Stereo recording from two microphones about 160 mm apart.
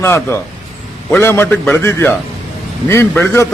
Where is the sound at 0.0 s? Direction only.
15° left (ahead or behind).